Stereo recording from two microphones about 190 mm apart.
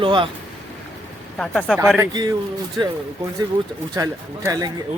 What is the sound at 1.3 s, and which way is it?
Speech, 5° left (ahead or behind).